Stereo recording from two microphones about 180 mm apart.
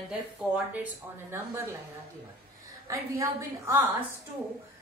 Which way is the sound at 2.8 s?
15° right (ahead or behind).